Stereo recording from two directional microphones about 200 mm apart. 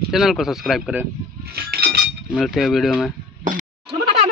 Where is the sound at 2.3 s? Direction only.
Centre (ahead or behind).